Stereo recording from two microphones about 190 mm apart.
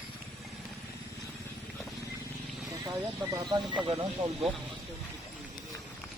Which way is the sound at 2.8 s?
15° right (ahead or behind).